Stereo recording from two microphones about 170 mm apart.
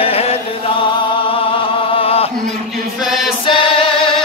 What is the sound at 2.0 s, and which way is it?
Chant, 35° left (ahead or behind).